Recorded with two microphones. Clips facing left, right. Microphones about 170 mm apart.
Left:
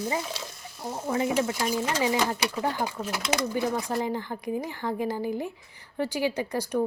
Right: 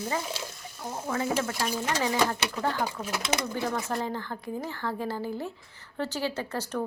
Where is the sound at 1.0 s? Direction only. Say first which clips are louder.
Left 3 dB; 15° left (ahead or behind).